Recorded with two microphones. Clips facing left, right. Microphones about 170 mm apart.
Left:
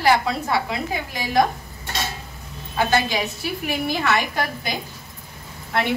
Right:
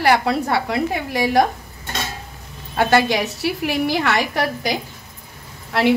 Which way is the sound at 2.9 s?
70° right (ahead or behind).